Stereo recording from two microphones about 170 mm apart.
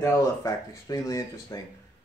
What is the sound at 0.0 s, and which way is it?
Speech, 20° left (ahead or behind).